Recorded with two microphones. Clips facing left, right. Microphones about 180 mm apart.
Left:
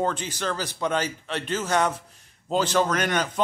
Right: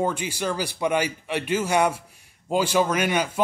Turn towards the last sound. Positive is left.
turn(degrees=-10)  # may be behind; listen again after turning